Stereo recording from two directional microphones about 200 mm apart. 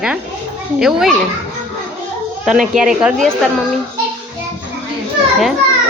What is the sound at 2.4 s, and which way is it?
Speech, centre (ahead or behind).